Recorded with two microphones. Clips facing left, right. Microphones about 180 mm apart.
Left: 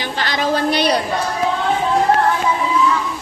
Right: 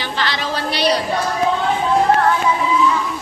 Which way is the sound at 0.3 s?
45° left (ahead or behind).